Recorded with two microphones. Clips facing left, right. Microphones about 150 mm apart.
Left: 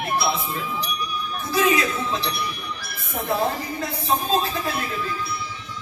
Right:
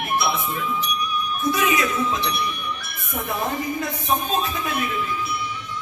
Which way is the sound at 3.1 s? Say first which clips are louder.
Left 2 dB; 30° left (ahead or behind).